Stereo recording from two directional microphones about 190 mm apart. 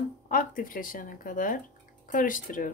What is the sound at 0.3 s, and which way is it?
Speech, 45° left (ahead or behind).